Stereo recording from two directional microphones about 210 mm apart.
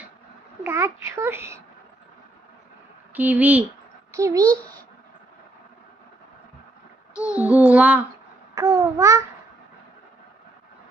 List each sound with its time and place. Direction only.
0.7 s a child's voice: 10° right (ahead or behind)
3.2 s a child's voice: 5° right (ahead or behind)
4.4 s a child's voice: 5° left (ahead or behind)
7.2 s child singing: 5° right (ahead or behind)
8.5 s a child's voice: 15° right (ahead or behind)